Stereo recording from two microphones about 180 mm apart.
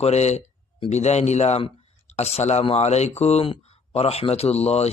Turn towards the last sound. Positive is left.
turn(degrees=35)  # may be behind; listen again after turning